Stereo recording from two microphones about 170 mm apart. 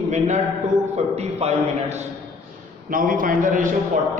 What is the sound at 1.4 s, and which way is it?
Speech, 40° right (ahead or behind).